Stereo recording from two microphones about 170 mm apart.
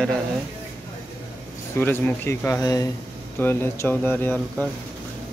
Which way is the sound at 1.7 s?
10° left (ahead or behind).